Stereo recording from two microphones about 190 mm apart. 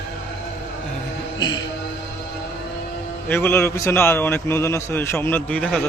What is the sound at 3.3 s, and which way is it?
A man's voice, 10° left (ahead or behind).